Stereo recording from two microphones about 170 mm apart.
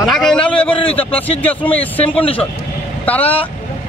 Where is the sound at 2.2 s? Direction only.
35° left (ahead or behind).